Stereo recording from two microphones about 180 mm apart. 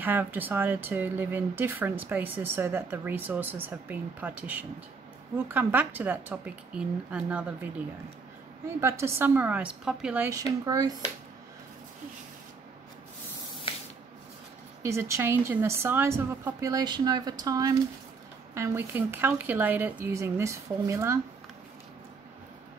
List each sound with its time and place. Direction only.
0.0 s speech: 10° right (ahead or behind)
14.8 s speech: 15° right (ahead or behind)